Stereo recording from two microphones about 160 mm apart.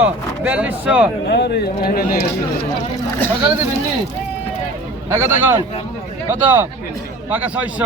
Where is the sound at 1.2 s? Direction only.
90° left; by 2.3 s 70° left (ahead or behind).